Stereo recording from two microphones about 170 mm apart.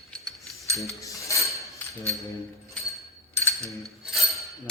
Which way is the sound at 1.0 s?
20° left (ahead or behind).